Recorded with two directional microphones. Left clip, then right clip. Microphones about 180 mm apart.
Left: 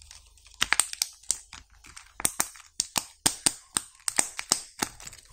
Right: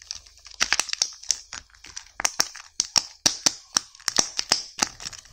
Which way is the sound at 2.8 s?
10° right (ahead or behind).